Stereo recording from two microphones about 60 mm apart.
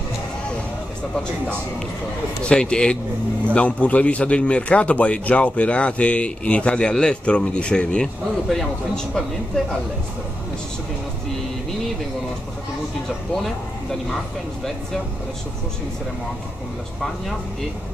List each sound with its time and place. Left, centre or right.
2.4 s a man's voice: centre